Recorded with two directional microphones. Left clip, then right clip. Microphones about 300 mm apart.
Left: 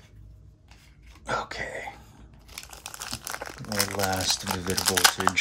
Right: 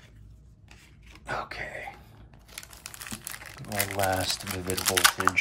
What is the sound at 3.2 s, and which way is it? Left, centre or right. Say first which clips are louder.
Crumpling: left 6 dB; centre.